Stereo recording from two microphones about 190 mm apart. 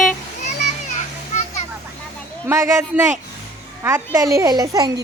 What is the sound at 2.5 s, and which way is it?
Speech, 15° right (ahead or behind).